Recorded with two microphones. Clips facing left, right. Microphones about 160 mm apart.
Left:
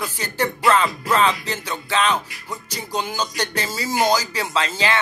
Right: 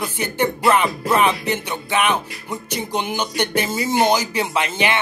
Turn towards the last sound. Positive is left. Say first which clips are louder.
# right 1 dB
turn(degrees=-20)  # may be behind; listen again after turning